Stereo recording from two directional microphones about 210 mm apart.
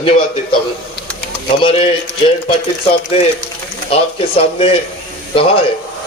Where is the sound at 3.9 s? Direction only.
25° left (ahead or behind).